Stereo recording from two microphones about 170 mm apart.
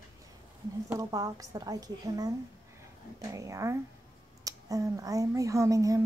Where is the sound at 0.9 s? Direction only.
20° right (ahead or behind).